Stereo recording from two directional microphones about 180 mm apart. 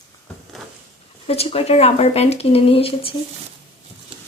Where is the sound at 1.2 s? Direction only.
35° left (ahead or behind).